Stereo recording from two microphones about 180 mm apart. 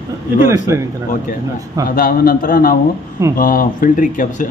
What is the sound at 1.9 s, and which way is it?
Speech, 55° left (ahead or behind).